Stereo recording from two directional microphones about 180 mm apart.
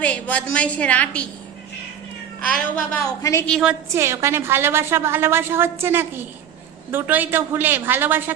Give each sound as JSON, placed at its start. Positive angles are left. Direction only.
{"t": 0.0, "sound": "a woman's voice", "side_deg": 5}
{"t": 2.4, "sound": "a woman's voice", "side_deg": 5}
{"t": 3.2, "sound": "a woman's voice", "side_deg": 20}
{"t": 3.6, "sound": "a woman's voice", "side_deg": -10}